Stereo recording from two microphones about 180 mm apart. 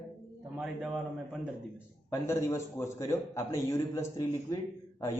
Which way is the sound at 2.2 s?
15° left (ahead or behind).